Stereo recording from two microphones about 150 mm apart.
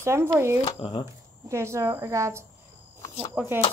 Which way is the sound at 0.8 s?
35° left (ahead or behind).